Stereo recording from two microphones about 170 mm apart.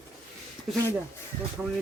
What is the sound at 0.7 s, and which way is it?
Speech, centre (ahead or behind).